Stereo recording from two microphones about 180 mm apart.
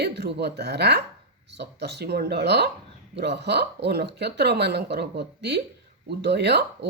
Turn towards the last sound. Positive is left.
turn(degrees=-65)  # may be behind; listen again after turning